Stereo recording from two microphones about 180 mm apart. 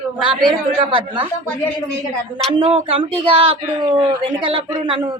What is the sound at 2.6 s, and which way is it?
Speech, 30° right (ahead or behind).